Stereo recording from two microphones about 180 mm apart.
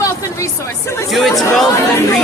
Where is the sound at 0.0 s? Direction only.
15° left (ahead or behind).